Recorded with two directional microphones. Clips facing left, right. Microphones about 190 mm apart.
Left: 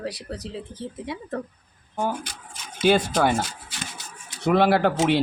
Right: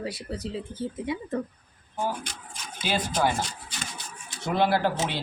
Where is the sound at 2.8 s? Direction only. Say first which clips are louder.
Left 7 dB; 50° left (ahead or behind).